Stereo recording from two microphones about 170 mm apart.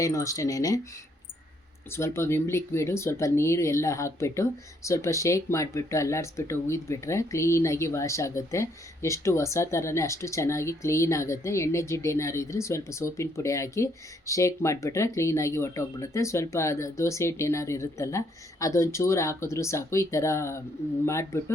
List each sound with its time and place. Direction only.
0.0 s speech: 20° left (ahead or behind)
1.9 s speech: 15° left (ahead or behind)